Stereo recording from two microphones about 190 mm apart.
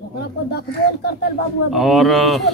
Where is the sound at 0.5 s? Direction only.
55° left (ahead or behind).